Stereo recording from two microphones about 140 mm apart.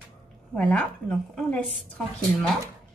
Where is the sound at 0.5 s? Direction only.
10° left (ahead or behind).